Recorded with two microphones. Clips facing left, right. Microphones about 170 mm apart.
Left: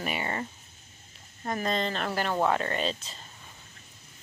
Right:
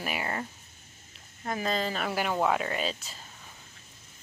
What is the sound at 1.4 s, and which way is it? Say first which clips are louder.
Speech: left 1 dB; 5° right (ahead or behind).